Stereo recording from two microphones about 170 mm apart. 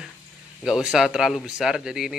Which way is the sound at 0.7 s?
5° right (ahead or behind).